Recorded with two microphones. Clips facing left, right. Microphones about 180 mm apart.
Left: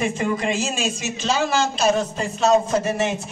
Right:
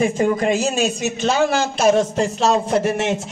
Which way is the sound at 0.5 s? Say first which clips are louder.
Right 5 dB; 60° right (ahead or behind).